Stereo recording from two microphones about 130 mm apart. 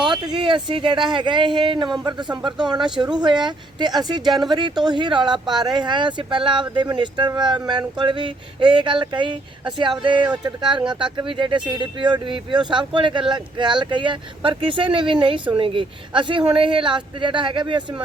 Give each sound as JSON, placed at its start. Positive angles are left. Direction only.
{"t": 0.1, "sound": "speech", "side_deg": -35}